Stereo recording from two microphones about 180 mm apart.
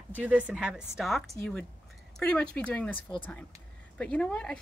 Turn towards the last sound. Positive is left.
turn(degrees=5)  # may be behind; listen again after turning